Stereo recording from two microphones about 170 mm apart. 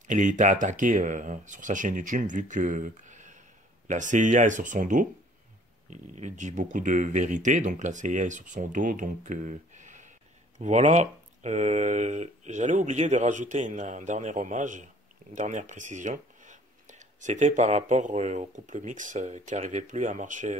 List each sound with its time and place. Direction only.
0.1 s speech: 45° right (ahead or behind)